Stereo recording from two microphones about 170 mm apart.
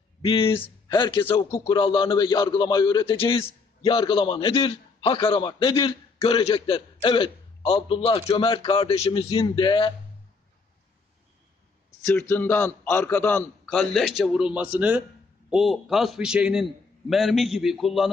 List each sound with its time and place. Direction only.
0.2 s a man's voice: 30° left (ahead or behind)
12.2 s a man's voice: 10° left (ahead or behind)